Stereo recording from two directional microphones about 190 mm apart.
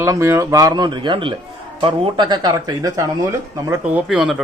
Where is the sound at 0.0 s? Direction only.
15° right (ahead or behind).